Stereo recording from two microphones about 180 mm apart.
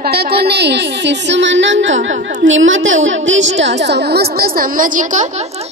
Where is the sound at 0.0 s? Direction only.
60° right (ahead or behind); by 5.3 s 45° right (ahead or behind).